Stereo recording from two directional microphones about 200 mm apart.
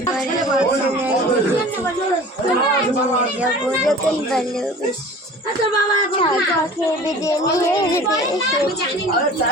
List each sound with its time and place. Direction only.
3.8 s speech: centre (ahead or behind)
7.3 s a woman's voice: 15° left (ahead or behind)